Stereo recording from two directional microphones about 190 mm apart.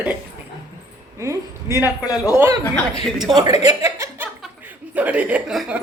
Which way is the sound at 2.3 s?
15° right (ahead or behind).